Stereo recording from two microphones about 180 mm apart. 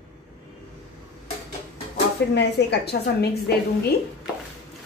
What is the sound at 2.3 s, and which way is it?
A woman's voice, 65° left (ahead or behind).